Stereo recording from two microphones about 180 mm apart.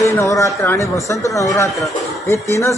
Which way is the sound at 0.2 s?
15° left (ahead or behind).